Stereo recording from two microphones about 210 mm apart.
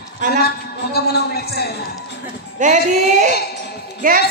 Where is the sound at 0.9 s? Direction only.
50° left (ahead or behind).